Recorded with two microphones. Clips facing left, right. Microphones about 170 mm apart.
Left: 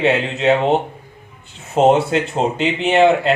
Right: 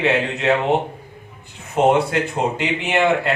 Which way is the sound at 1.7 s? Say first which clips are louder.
Left 3 dB; 30° left (ahead or behind).